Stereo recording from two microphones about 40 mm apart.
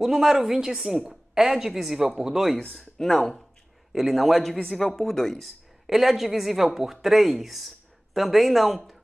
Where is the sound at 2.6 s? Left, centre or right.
Centre.